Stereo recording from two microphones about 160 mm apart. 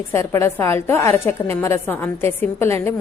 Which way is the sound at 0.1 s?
15° left (ahead or behind).